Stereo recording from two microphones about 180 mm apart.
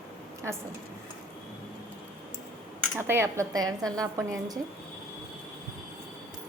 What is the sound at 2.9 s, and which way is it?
Speech, 10° right (ahead or behind).